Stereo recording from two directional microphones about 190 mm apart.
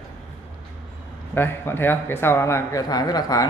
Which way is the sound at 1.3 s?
10° left (ahead or behind).